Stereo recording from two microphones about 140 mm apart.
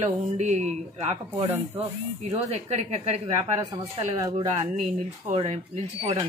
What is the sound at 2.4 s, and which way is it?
Speech, 50° right (ahead or behind).